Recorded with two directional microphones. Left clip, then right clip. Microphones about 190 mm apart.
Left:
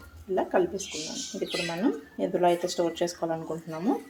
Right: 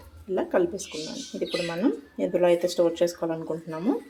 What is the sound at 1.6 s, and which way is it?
Speech, 15° right (ahead or behind).